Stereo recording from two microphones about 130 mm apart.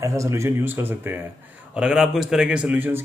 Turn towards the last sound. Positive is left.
turn(degrees=-15)  # may be behind; listen again after turning